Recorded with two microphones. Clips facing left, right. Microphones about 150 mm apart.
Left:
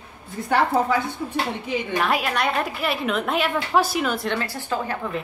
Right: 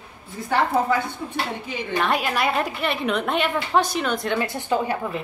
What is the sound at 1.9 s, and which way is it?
A woman's voice, centre (ahead or behind).